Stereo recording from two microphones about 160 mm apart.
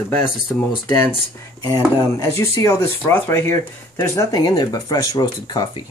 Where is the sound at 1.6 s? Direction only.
20° left (ahead or behind).